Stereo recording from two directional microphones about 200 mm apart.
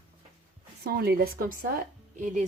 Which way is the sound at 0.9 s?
50° right (ahead or behind).